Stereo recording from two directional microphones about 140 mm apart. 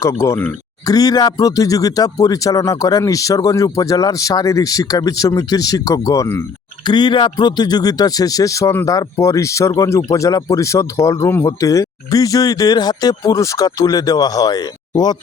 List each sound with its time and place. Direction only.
0.0 s speech: 20° left (ahead or behind)
6.8 s speech: 30° left (ahead or behind)